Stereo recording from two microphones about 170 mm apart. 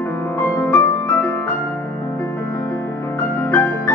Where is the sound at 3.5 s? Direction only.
15° left (ahead or behind).